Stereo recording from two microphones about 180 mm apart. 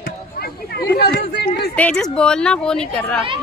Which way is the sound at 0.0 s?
60° left (ahead or behind).